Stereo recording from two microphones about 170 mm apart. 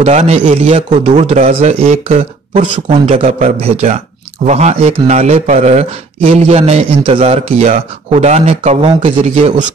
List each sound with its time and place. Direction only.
0.0 s a man's voice: 40° right (ahead or behind)